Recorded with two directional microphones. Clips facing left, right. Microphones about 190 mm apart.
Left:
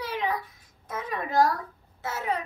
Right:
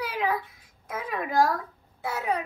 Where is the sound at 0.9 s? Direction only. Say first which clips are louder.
Right 1 dB; 10° right (ahead or behind).